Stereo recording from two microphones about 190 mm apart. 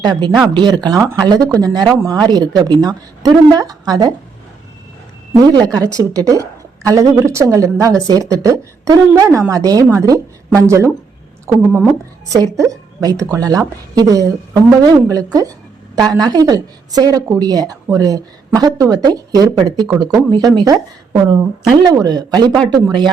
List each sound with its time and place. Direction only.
0.0 s a woman's voice: 20° right (ahead or behind)
5.4 s a woman's voice: 20° right (ahead or behind)